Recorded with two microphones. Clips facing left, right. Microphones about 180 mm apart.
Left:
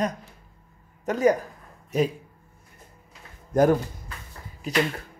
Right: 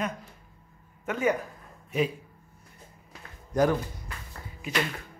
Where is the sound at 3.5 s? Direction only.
50° left (ahead or behind).